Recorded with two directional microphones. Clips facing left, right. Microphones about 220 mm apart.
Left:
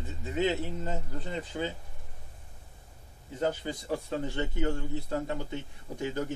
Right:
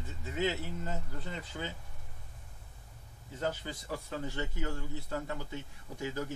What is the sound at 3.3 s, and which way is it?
A man's voice, 20° left (ahead or behind).